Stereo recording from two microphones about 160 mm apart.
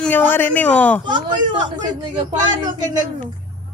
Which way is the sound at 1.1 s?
30° right (ahead or behind).